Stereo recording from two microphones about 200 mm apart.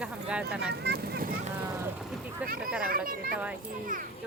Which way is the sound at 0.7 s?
55° right (ahead or behind).